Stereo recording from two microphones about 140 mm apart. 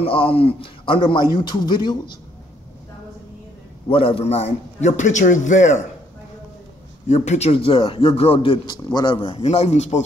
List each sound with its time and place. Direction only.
0.0 s a man's voice: 40° left (ahead or behind)
3.9 s a man's voice: 40° left (ahead or behind); by 5.8 s 60° left (ahead or behind)
7.1 s a man's voice: 50° left (ahead or behind)